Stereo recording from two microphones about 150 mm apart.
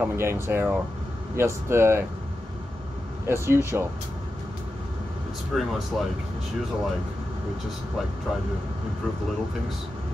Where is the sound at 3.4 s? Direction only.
15° right (ahead or behind).